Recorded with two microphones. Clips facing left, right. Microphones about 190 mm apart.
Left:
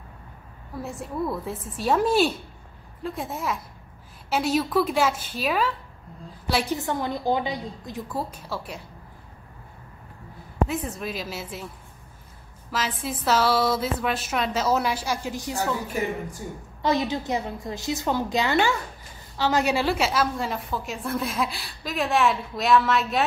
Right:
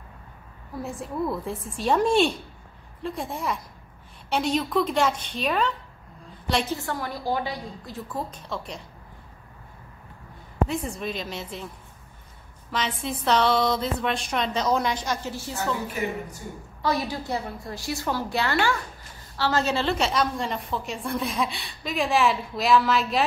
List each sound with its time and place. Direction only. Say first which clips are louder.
0.8 s a woman's voice: even; centre (ahead or behind)
6.7 s a woman's voice: left 3 dB; 20° left (ahead or behind)
10.7 s a woman's voice: even; centre (ahead or behind)
12.7 s a woman's voice: even; 5° left (ahead or behind)
16.8 s a woman's voice: left 3 dB; 20° left (ahead or behind); by 23.2 s centre (ahead or behind)